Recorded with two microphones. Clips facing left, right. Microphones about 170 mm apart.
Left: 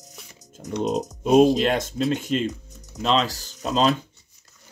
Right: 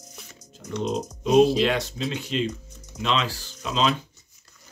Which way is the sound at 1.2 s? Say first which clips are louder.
Left 2 dB; 50° left (ahead or behind).